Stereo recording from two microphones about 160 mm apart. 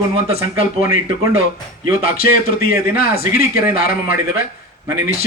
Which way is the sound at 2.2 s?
65° left (ahead or behind).